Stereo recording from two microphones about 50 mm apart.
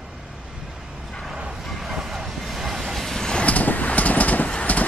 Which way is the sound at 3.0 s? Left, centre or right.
Centre.